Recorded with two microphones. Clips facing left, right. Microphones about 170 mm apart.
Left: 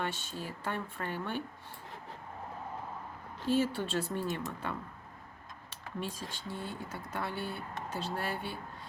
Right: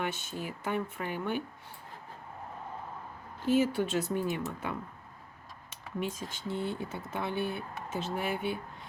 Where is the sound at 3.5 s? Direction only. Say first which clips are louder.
Right 3 dB; 15° right (ahead or behind).